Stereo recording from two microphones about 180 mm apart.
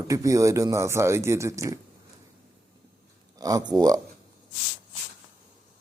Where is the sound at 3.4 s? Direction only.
20° right (ahead or behind).